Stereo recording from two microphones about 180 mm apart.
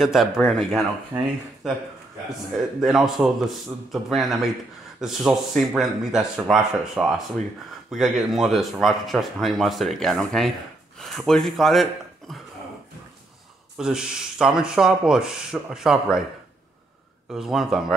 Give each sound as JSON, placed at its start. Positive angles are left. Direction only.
{"t": 0.0, "sound": "speech", "side_deg": 0}
{"t": 1.1, "sound": "speech", "side_deg": -10}
{"t": 2.8, "sound": "speech", "side_deg": 0}
{"t": 13.7, "sound": "speech", "side_deg": -5}
{"t": 17.3, "sound": "speech", "side_deg": 0}